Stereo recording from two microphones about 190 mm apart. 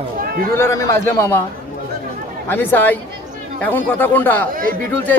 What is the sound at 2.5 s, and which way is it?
Speech, 10° left (ahead or behind).